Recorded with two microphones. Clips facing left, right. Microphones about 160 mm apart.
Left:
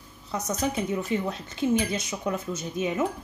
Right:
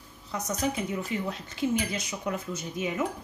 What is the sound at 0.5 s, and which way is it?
Speech, 25° left (ahead or behind).